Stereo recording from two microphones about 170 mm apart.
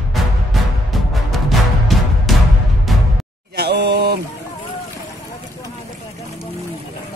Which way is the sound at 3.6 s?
75° right (ahead or behind).